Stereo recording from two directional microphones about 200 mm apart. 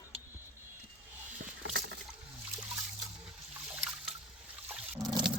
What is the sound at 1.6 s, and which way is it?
Rowboat, 60° right (ahead or behind).